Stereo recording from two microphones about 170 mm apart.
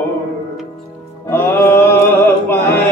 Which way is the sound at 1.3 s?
15° left (ahead or behind).